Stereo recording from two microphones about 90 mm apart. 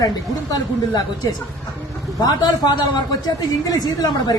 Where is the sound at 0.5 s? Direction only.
45° left (ahead or behind).